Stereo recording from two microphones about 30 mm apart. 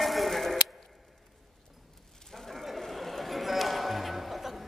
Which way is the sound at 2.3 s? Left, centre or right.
Centre.